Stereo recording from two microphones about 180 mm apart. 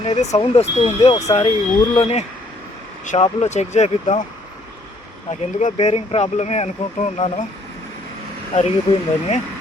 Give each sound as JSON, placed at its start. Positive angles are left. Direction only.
{"t": 0.0, "sound": "speech", "side_deg": 35}
{"t": 3.4, "sound": "speech", "side_deg": 40}
{"t": 5.3, "sound": "speech", "side_deg": 40}
{"t": 8.5, "sound": "speech", "side_deg": 35}